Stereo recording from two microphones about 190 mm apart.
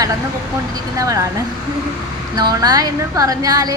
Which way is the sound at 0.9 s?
15° right (ahead or behind).